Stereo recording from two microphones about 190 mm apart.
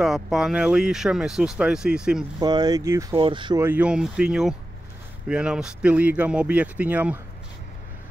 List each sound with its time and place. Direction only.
0.0 s speech: centre (ahead or behind)
2.4 s speech: 20° right (ahead or behind)
3.6 s speech: 5° right (ahead or behind)